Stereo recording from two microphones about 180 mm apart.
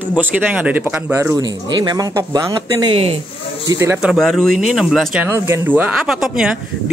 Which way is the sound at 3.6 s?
15° right (ahead or behind).